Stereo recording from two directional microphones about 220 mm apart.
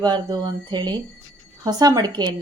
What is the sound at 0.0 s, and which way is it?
A woman's voice, 20° right (ahead or behind).